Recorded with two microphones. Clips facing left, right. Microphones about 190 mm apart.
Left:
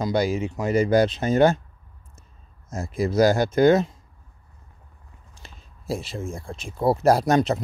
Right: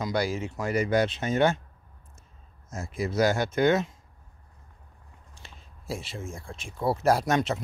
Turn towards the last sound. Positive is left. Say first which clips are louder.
# left 5 dB
turn(degrees=35)  # may be behind; listen again after turning